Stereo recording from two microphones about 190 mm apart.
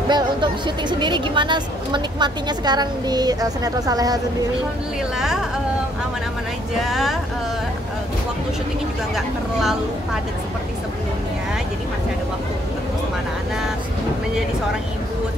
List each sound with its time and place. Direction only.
0.1 s a woman's voice: 25° right (ahead or behind)
6.8 s speech: centre (ahead or behind)
9.1 s speech: centre (ahead or behind)